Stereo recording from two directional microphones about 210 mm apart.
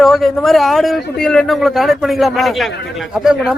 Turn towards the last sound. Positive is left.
turn(degrees=0)  # may be behind; listen again after turning